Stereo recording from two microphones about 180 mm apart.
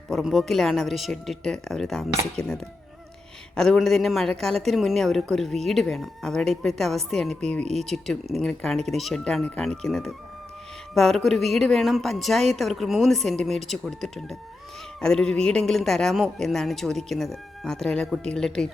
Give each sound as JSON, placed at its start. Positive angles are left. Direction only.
{"t": 0.1, "sound": "speech", "side_deg": 0}